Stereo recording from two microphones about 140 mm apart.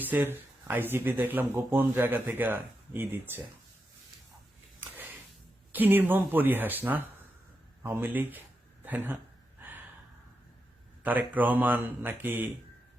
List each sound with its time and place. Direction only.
0.0 s speech: 15° right (ahead or behind)
5.7 s speech: 15° right (ahead or behind)
9.6 s gasp: 15° right (ahead or behind)
11.0 s speech: 10° right (ahead or behind)